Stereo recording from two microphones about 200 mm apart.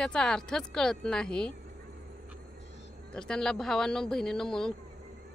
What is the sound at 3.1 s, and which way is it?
Speech, 5° left (ahead or behind).